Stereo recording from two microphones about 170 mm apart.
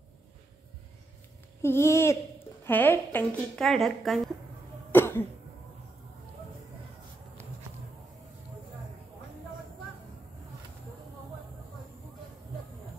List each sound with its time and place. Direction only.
1.6 s a woman's voice: 15° left (ahead or behind)
3.6 s a woman's voice: centre (ahead or behind)
4.9 s cough: 15° left (ahead or behind)